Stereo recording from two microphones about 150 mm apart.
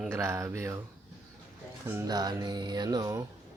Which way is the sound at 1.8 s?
25° right (ahead or behind).